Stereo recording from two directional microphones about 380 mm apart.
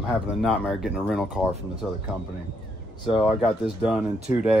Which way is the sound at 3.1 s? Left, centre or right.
Centre.